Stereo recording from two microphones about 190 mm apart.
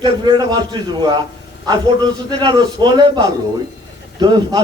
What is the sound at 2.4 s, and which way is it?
A man's voice, 25° right (ahead or behind).